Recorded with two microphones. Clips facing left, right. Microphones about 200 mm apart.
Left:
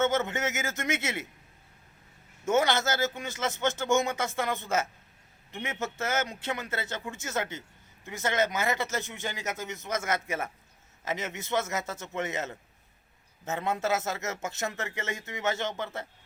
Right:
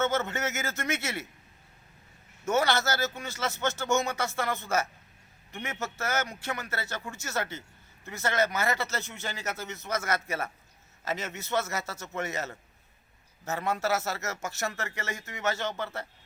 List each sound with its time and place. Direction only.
0.1 s speech: 15° left (ahead or behind)
2.5 s a man's voice: 20° left (ahead or behind)